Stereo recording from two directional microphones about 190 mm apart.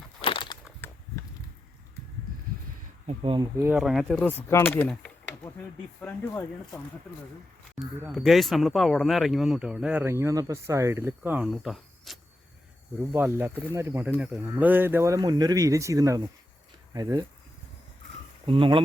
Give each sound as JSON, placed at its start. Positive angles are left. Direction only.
{"t": 0.2, "sound": "a sound", "side_deg": 25}
{"t": 3.1, "sound": "speech", "side_deg": -30}
{"t": 3.6, "sound": "speech", "side_deg": -5}
{"t": 7.8, "sound": "speech", "side_deg": 0}
{"t": 13.1, "sound": "speech", "side_deg": -10}
{"t": 18.4, "sound": "speech", "side_deg": -25}